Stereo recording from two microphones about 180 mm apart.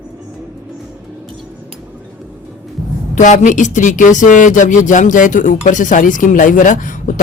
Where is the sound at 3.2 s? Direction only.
45° left (ahead or behind).